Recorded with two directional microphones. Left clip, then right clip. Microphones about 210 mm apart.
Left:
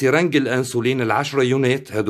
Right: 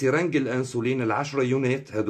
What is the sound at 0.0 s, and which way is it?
Speech, 50° left (ahead or behind).